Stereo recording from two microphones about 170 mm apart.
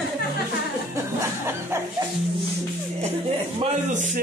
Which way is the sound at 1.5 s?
15° right (ahead or behind).